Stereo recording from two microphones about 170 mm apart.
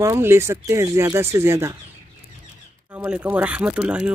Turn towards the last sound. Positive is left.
turn(degrees=-5)  # may be behind; listen again after turning